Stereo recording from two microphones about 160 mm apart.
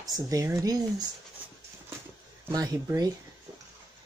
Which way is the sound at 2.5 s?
20° right (ahead or behind).